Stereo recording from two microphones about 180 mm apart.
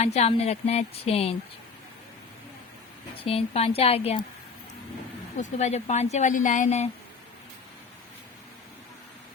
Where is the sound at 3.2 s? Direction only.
35° left (ahead or behind).